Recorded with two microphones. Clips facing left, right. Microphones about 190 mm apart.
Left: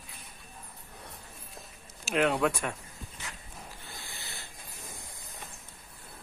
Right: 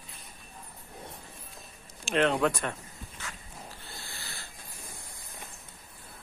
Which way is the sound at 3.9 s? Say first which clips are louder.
Even; 20° left (ahead or behind).